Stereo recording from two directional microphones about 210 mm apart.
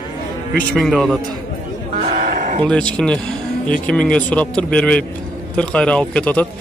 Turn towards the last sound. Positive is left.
turn(degrees=5)  # may be behind; listen again after turning